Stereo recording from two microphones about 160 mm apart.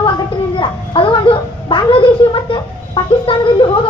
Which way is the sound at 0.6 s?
35° left (ahead or behind).